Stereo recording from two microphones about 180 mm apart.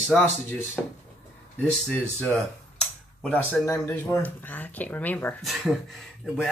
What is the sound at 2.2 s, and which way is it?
Speech, 5° left (ahead or behind).